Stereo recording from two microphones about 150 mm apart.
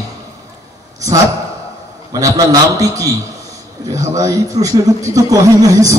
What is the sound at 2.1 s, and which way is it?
Mantra, 25° right (ahead or behind).